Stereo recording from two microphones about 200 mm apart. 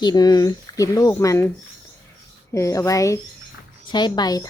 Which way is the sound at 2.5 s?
15° left (ahead or behind).